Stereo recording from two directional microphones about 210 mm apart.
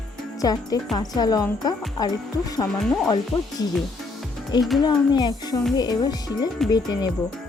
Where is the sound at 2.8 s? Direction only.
Centre (ahead or behind).